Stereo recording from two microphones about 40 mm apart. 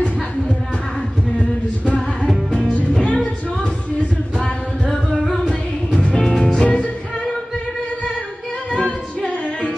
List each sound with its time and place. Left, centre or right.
2.0 s music: centre
5.9 s music: left
6.6 s music: left
8.8 s singing: left